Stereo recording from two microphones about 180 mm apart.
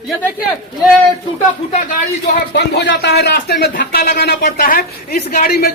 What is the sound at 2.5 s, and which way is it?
Speech, 70° left (ahead or behind).